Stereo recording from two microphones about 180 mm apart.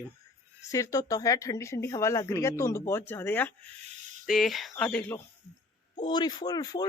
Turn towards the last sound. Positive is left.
turn(degrees=20)  # may be behind; listen again after turning